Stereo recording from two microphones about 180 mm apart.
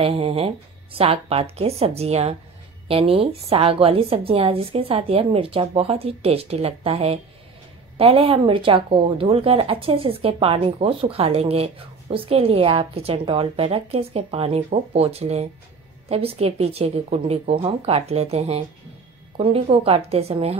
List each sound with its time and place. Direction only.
0.0 s speech: 30° right (ahead or behind)